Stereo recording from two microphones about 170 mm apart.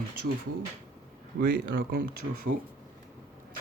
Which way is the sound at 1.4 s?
70° right (ahead or behind).